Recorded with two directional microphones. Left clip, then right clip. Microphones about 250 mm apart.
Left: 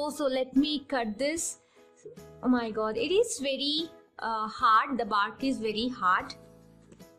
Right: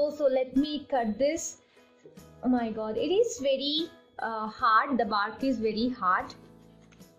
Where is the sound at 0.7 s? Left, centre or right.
Centre.